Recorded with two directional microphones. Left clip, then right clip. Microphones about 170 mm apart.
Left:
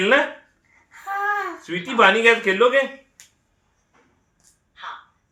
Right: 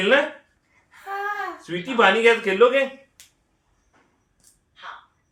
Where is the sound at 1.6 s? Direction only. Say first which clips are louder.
Left 2 dB; 15° left (ahead or behind).